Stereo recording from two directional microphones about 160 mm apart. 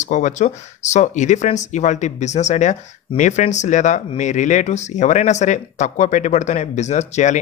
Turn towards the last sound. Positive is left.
turn(degrees=45)  # may be behind; listen again after turning